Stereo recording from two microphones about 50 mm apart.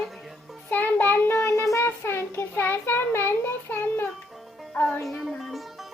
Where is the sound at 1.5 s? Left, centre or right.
Left.